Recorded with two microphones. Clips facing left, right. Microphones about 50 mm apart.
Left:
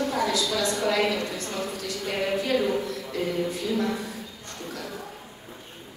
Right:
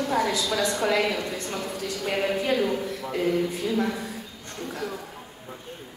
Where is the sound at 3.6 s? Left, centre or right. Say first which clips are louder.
Even; right.